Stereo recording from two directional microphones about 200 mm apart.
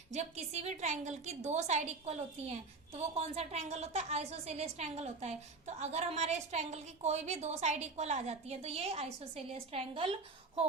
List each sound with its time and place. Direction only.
0.1 s a woman's voice: 35° right (ahead or behind)